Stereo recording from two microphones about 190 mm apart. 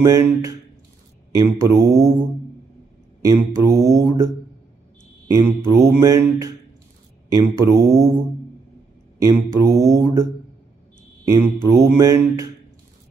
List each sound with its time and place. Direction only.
0.0 s mantra: 15° right (ahead or behind)
1.6 s mantra: 15° right (ahead or behind)
3.3 s mantra: 15° right (ahead or behind)
5.3 s mantra: 15° right (ahead or behind)
9.2 s mantra: 15° right (ahead or behind)
11.3 s mantra: 15° right (ahead or behind)